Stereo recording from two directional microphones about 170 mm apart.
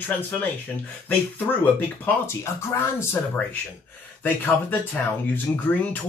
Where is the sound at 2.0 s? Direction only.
15° left (ahead or behind).